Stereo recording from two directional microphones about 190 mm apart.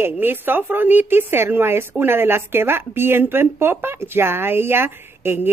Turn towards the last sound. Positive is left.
turn(degrees=-10)  # may be behind; listen again after turning